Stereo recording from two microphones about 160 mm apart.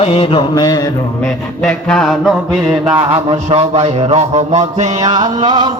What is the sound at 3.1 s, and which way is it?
Mantra, 40° right (ahead or behind).